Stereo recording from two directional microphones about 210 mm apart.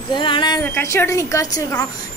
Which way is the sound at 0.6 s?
10° left (ahead or behind).